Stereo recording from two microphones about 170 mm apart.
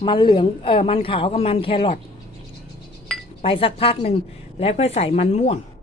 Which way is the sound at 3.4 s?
35° left (ahead or behind).